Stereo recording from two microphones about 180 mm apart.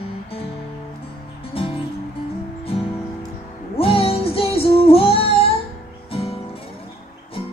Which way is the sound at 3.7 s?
30° left (ahead or behind).